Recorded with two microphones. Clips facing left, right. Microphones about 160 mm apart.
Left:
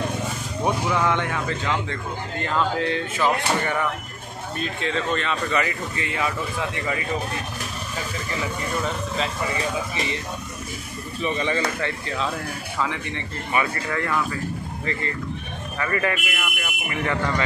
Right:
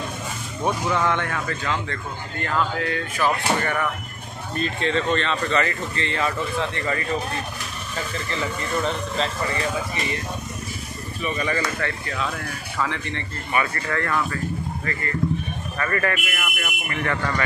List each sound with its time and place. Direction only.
0.7 s speech: 10° left (ahead or behind)
4.6 s speech: 5° left (ahead or behind)
8.3 s speech: 5° left (ahead or behind)
11.2 s speech: 25° left (ahead or behind)
15.8 s speech: 15° left (ahead or behind)